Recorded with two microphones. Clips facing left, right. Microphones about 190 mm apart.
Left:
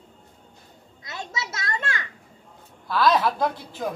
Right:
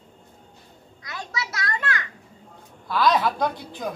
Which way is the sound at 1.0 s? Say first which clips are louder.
Right 1 dB; 25° left (ahead or behind).